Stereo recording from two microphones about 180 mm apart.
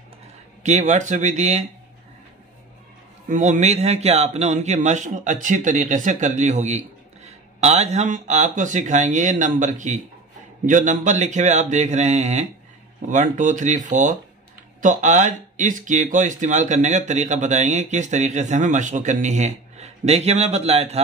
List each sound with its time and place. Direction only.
0.7 s speech: 40° right (ahead or behind)
3.3 s speech: 40° right (ahead or behind)